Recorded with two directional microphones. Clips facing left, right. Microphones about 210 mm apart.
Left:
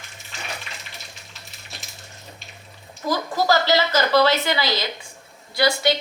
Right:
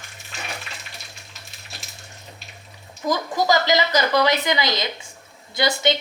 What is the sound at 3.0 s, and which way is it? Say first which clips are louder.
A woman's voice: even; 15° right (ahead or behind).